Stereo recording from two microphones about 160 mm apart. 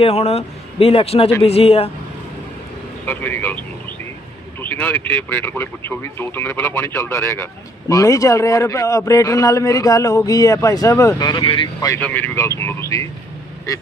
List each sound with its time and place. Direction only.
0.0 s speech: 40° left (ahead or behind)
3.1 s speech: 10° left (ahead or behind)
11.9 s speech: 10° left (ahead or behind)